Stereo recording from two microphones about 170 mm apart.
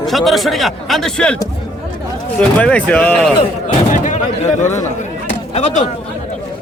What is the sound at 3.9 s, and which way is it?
A man's voice, 45° left (ahead or behind).